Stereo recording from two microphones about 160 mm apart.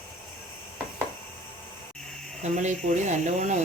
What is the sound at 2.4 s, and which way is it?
Speech, 45° right (ahead or behind).